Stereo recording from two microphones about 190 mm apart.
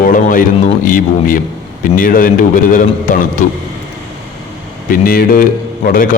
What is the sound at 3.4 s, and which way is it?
Speech, 45° left (ahead or behind).